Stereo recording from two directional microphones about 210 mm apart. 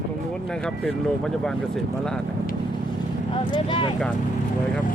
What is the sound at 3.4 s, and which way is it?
Speech, 25° left (ahead or behind).